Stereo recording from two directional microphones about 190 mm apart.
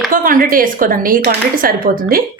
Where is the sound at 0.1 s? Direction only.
45° right (ahead or behind).